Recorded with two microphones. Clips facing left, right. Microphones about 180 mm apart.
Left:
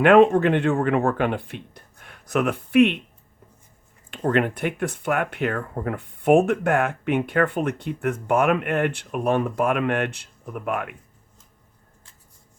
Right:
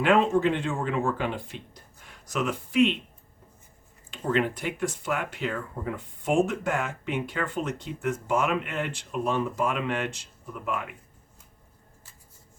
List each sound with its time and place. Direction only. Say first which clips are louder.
0.0 s speech: left 7 dB; 60° left (ahead or behind)
4.1 s speech: left 4 dB; 60° left (ahead or behind)